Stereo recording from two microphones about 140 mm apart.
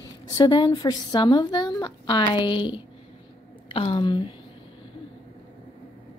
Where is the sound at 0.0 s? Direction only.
30° left (ahead or behind).